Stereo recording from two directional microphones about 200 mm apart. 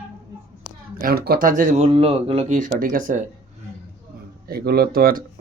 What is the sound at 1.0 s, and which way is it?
Speech, 50° right (ahead or behind).